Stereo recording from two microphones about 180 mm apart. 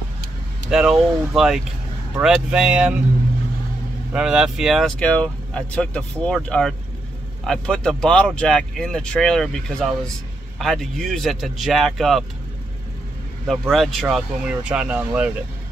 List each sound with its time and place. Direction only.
0.7 s speech: 5° right (ahead or behind)
4.1 s speech: 5° right (ahead or behind)
13.5 s speech: centre (ahead or behind)